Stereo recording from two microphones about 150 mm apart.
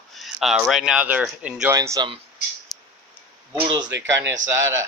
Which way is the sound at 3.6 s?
30° right (ahead or behind).